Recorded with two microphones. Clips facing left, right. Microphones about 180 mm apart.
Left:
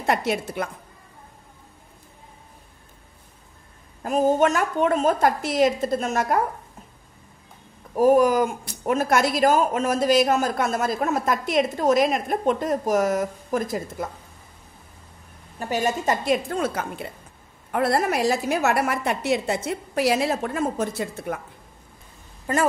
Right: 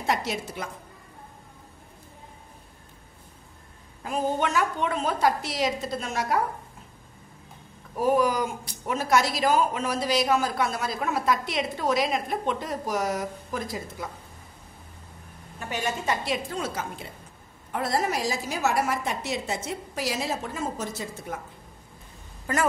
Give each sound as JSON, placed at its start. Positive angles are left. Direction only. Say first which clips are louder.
{"t": 0.0, "sound": "a woman's voice", "louder": "left 4 dB", "side_deg": 55}
{"t": 4.0, "sound": "speech", "louder": "left 7 dB", "side_deg": 45}
{"t": 7.9, "sound": "speech", "louder": "left 6 dB", "side_deg": 45}
{"t": 15.6, "sound": "a woman's voice", "louder": "left 6 dB", "side_deg": 40}